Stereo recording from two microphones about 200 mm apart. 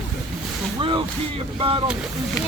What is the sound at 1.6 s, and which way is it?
Speech, 25° right (ahead or behind).